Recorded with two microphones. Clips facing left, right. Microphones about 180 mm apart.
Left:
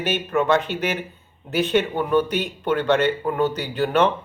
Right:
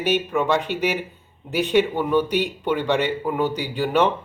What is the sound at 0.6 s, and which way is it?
Speech, 10° right (ahead or behind).